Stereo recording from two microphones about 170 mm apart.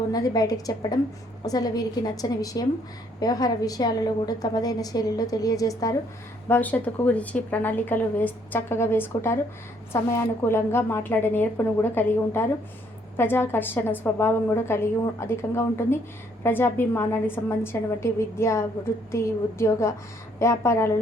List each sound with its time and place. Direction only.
0.1 s a woman's voice: 20° left (ahead or behind)
6.5 s a woman's voice: 10° left (ahead or behind)